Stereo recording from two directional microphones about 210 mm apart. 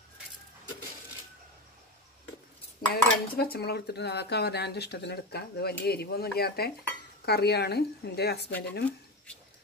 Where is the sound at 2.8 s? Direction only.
45° left (ahead or behind).